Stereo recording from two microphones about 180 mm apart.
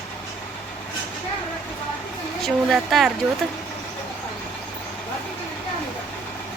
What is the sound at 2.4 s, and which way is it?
Speech, centre (ahead or behind).